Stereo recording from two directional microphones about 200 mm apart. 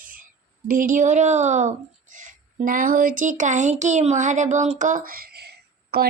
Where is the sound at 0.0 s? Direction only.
45° right (ahead or behind).